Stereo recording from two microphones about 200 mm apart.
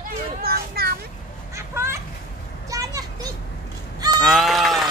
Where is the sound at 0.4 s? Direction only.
50° right (ahead or behind).